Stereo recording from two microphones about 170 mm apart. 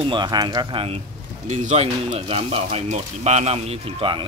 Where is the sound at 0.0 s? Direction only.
25° right (ahead or behind).